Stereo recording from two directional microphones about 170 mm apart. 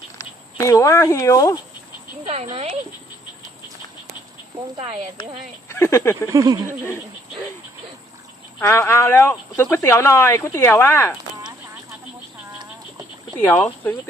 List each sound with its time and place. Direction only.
0.6 s speech: 15° left (ahead or behind)
2.2 s speech: 40° right (ahead or behind)
4.8 s speech: 40° right (ahead or behind)
5.6 s speech: 15° left (ahead or behind)
6.3 s speech: 20° right (ahead or behind)
8.6 s speech: 15° left (ahead or behind)
13.4 s speech: 10° left (ahead or behind)